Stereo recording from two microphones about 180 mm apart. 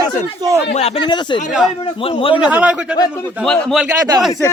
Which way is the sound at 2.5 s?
5° right (ahead or behind).